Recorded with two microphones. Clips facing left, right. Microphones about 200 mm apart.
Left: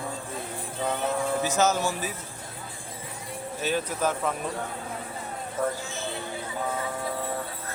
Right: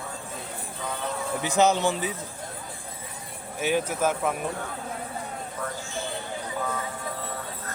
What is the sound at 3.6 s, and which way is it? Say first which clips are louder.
Speech: right 3 dB; 15° right (ahead or behind).